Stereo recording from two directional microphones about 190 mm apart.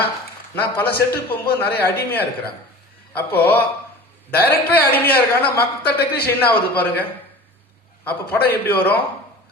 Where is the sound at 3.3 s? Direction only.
10° left (ahead or behind).